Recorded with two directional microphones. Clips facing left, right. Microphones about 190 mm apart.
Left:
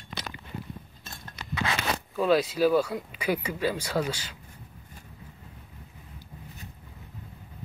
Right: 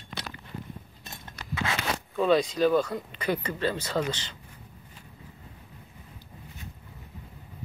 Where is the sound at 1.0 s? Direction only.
20° right (ahead or behind).